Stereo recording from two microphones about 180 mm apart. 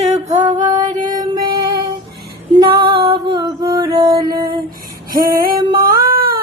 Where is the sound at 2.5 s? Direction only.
20° right (ahead or behind).